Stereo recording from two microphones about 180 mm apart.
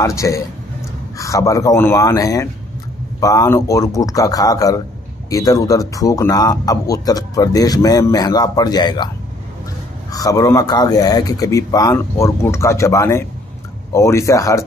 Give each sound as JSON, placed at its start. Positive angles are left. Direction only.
{"t": 0.0, "sound": "speech", "side_deg": 15}
{"t": 10.1, "sound": "speech", "side_deg": 20}